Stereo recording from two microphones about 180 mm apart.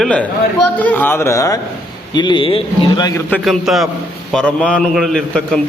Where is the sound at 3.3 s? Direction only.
Centre (ahead or behind).